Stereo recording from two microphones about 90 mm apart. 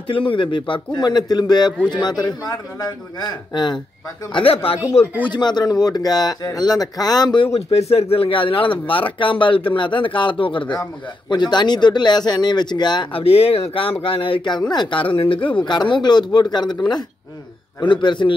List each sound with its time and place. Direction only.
0.1 s speech: 70° left (ahead or behind); by 3.7 s 50° left (ahead or behind)
4.3 s speech: 75° left (ahead or behind)
5.2 s speech: 55° left (ahead or behind)
8.1 s speech: 80° left
11.2 s speech: 55° left (ahead or behind)
13.1 s speech: 90° left; by 14.6 s 70° left (ahead or behind)
14.7 s speech: 60° left (ahead or behind); by 15.5 s 75° left (ahead or behind)
15.6 s speech: 60° left (ahead or behind)